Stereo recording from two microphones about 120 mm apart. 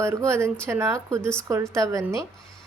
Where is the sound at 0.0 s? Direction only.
25° right (ahead or behind).